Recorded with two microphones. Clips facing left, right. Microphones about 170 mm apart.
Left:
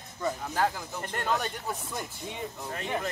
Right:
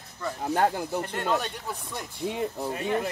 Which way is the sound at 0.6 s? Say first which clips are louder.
Right 7 dB; 50° right (ahead or behind).